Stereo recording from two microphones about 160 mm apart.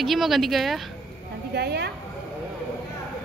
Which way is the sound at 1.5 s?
90° right.